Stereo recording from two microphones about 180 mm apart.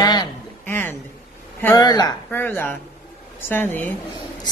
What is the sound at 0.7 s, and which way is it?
Speech, 10° left (ahead or behind).